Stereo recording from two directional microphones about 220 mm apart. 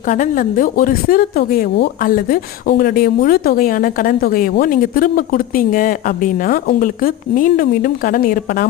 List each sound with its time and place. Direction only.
0.0 s speech: 35° left (ahead or behind)